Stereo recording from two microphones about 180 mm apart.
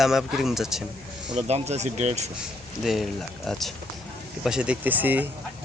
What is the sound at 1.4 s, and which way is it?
Speech, 35° right (ahead or behind).